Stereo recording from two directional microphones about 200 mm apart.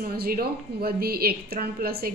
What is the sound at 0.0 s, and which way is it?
A woman's voice, 50° right (ahead or behind).